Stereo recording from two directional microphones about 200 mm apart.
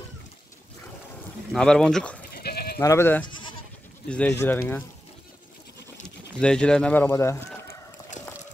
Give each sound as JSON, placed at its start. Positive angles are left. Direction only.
{"t": 1.5, "sound": "speech", "side_deg": 5}
{"t": 2.3, "sound": "goat", "side_deg": 50}
{"t": 2.8, "sound": "speech", "side_deg": 15}
{"t": 6.0, "sound": "speech", "side_deg": 5}